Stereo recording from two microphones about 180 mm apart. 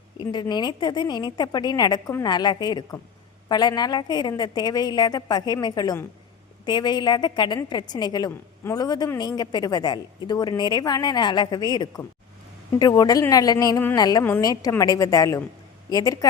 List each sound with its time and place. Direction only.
0.2 s a woman's voice: 25° left (ahead or behind)